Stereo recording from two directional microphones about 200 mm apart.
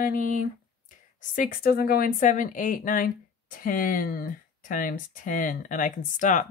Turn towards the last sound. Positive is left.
turn(degrees=40)  # may be behind; listen again after turning